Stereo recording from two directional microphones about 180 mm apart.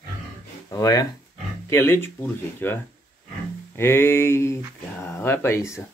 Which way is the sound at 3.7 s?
15° left (ahead or behind).